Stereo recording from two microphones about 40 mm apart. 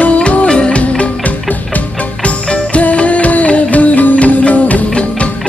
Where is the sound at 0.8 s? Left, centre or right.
Left.